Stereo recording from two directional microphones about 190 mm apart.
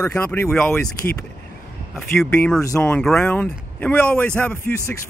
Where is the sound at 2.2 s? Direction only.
10° left (ahead or behind).